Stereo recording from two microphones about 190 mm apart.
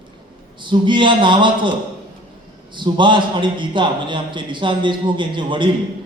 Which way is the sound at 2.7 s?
25° right (ahead or behind).